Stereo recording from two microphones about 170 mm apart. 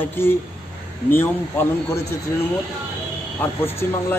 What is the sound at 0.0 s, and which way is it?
A man's voice, 15° left (ahead or behind).